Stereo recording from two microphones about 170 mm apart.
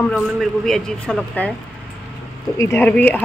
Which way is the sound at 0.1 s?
5° left (ahead or behind).